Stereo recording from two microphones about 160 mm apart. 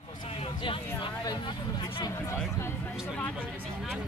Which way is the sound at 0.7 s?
30° left (ahead or behind).